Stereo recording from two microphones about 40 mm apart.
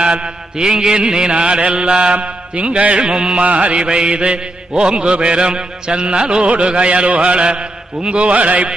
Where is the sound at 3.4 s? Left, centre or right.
Right.